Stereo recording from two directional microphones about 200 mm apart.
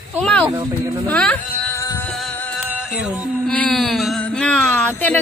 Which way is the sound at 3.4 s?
5° left (ahead or behind).